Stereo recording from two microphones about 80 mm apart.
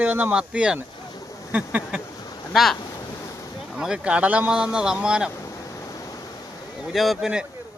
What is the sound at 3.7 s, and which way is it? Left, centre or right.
Speech, centre.